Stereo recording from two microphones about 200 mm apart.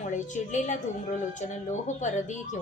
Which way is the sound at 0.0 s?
40° left (ahead or behind).